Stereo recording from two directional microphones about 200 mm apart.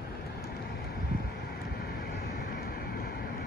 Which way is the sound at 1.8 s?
50° left (ahead or behind).